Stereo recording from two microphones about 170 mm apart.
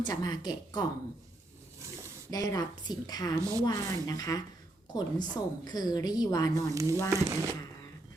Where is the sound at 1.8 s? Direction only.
15° right (ahead or behind).